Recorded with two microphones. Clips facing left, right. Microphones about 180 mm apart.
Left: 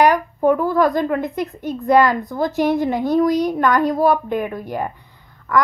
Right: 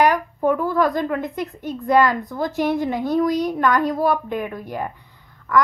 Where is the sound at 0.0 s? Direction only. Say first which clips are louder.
Left 3 dB; 35° left (ahead or behind).